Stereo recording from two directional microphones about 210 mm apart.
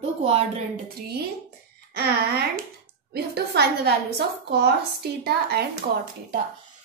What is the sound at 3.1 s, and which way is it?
A woman's voice, 50° right (ahead or behind).